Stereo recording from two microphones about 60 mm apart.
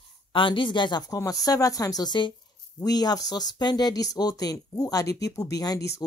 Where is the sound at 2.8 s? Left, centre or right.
Left.